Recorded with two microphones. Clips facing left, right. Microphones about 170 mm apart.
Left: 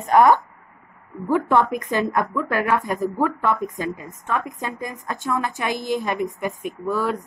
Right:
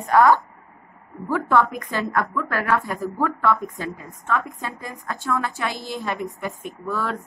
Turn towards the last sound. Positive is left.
turn(degrees=15)  # may be behind; listen again after turning